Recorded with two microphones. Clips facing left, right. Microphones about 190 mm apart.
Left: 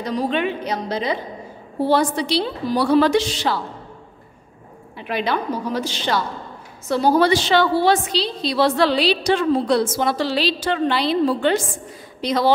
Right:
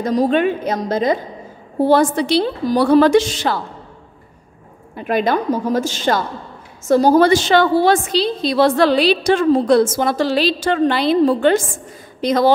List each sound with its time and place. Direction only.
0.0 s a woman's voice: 45° right (ahead or behind)
4.9 s a woman's voice: 45° right (ahead or behind)